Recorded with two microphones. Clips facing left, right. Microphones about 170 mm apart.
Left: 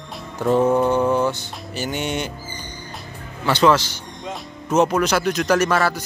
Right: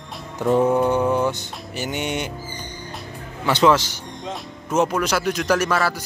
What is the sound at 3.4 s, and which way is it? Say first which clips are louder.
Speech: even; 15° right (ahead or behind).